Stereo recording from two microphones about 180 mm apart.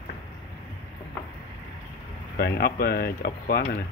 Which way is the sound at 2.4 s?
60° left (ahead or behind).